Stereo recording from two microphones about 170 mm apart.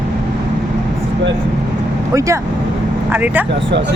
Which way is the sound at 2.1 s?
20° right (ahead or behind).